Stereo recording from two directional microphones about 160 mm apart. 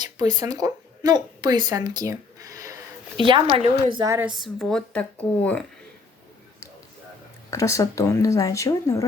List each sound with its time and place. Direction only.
0.0 s speech: 25° right (ahead or behind)
3.2 s a woman's voice: 30° right (ahead or behind)
3.9 s speech: 20° right (ahead or behind)
4.2 s speech: centre (ahead or behind)
7.5 s speech: 20° left (ahead or behind)